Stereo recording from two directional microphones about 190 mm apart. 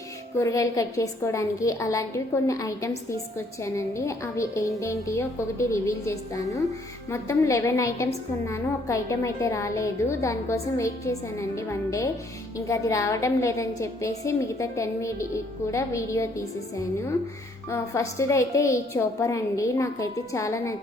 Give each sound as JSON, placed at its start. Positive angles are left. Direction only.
{"t": 0.3, "sound": "a woman's voice", "side_deg": 15}